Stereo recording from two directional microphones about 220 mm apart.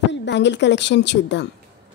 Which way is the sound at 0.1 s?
50° left (ahead or behind).